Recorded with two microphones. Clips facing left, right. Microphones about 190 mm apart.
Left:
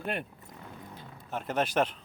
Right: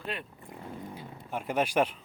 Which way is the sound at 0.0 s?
55° left (ahead or behind).